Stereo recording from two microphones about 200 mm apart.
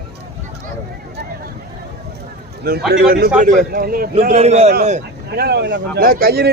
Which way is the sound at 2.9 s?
50° right (ahead or behind).